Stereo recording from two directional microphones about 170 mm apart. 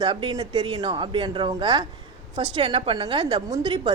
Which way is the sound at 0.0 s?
30° right (ahead or behind).